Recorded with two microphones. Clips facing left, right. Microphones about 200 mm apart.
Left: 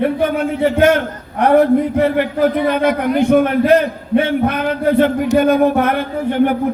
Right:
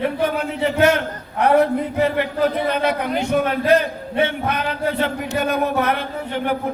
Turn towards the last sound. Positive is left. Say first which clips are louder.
# left 9 dB
turn(degrees=50)  # may be behind; listen again after turning